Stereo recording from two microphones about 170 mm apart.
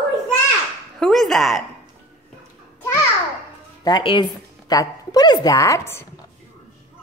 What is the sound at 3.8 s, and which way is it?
A woman's voice, 25° left (ahead or behind).